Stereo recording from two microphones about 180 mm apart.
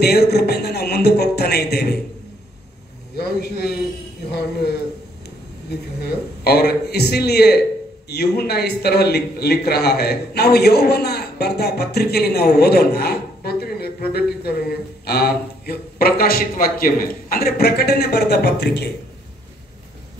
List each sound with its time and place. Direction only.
0.0 s a man's voice: 65° left (ahead or behind)
3.2 s a man's voice: 60° left (ahead or behind)
5.7 s a man's voice: 65° left (ahead or behind)